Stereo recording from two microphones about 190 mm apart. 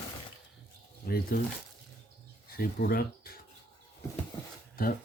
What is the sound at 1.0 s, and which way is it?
Speech, 50° left (ahead or behind).